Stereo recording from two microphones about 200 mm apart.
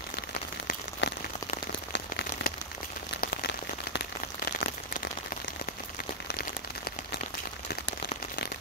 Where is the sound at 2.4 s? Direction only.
60° left (ahead or behind).